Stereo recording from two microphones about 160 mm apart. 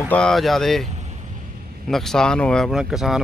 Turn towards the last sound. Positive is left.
turn(degrees=-5)  # may be behind; listen again after turning